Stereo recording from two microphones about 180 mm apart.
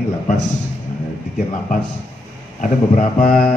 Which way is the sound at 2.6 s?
35° left (ahead or behind).